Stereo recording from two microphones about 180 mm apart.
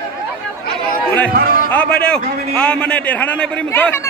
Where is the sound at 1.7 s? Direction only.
5° left (ahead or behind).